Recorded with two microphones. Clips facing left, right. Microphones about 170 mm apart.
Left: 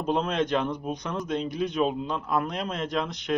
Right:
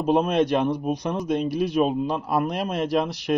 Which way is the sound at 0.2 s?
15° right (ahead or behind).